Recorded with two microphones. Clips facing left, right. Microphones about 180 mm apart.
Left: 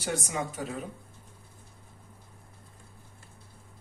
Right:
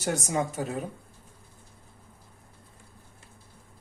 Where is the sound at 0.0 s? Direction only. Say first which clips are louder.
Right 4 dB; 45° right (ahead or behind).